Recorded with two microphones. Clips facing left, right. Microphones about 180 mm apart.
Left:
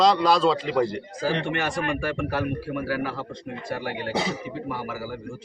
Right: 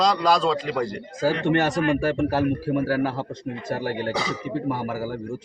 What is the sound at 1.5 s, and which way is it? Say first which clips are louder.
A man's voice: right 6 dB; 40° right (ahead or behind).